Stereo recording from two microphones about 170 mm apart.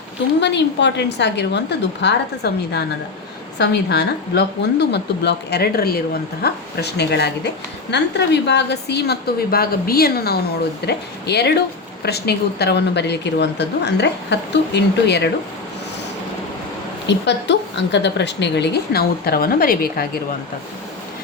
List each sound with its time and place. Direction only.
0.3 s a woman's voice: 90° left; by 6.0 s 65° left (ahead or behind)
6.4 s a woman's voice: 75° left (ahead or behind)
7.9 s a woman's voice: 90° left; by 10.4 s 65° left (ahead or behind)
10.8 s a woman's voice: 75° left (ahead or behind)
17.1 s a woman's voice: 90° left; by 20.1 s 60° left (ahead or behind)